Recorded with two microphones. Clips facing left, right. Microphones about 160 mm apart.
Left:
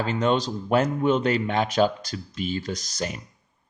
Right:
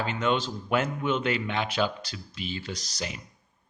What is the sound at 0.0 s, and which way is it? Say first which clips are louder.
Speech: left 4 dB; 40° left (ahead or behind).